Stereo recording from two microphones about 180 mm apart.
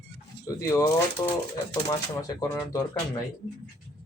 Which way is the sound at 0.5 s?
20° left (ahead or behind).